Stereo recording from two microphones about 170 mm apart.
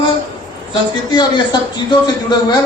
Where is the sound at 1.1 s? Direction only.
25° left (ahead or behind).